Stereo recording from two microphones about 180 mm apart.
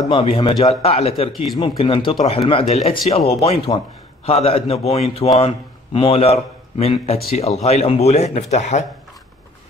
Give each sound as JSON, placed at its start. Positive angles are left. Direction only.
{"t": 0.1, "sound": "speech", "side_deg": 30}
{"t": 1.3, "sound": "speech", "side_deg": 0}
{"t": 1.6, "sound": "speech", "side_deg": 30}